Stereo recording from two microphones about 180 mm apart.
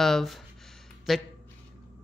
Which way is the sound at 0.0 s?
Centre (ahead or behind).